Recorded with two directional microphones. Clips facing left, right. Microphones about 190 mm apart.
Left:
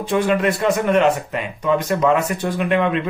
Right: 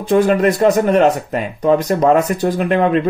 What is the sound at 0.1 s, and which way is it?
Speech, 40° right (ahead or behind).